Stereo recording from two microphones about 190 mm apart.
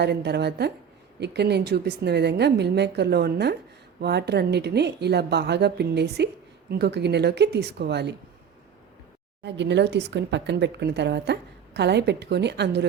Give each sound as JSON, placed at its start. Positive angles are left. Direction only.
{"t": 0.0, "sound": "speech", "side_deg": -60}
{"t": 9.4, "sound": "speech", "side_deg": -65}